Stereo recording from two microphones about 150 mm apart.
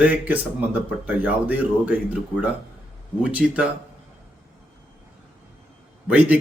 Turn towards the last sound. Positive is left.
turn(degrees=-10)  # may be behind; listen again after turning